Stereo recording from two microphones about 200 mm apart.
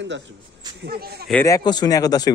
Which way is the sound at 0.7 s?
50° right (ahead or behind).